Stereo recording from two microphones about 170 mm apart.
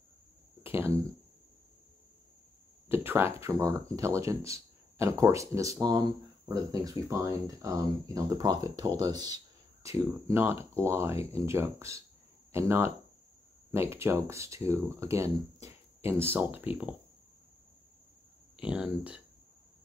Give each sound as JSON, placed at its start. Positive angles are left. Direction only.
{"t": 0.7, "sound": "a sound", "side_deg": -15}
{"t": 2.9, "sound": "speech", "side_deg": -15}
{"t": 18.6, "sound": "speech", "side_deg": -5}